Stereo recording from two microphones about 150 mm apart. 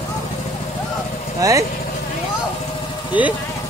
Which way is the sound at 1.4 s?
20° right (ahead or behind).